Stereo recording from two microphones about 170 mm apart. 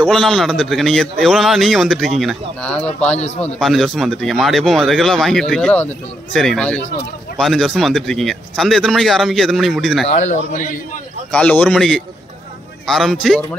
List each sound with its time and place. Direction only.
0.0 s a man's voice: centre (ahead or behind)
10.0 s a man's voice: 45° left (ahead or behind)
11.3 s a man's voice: 5° left (ahead or behind)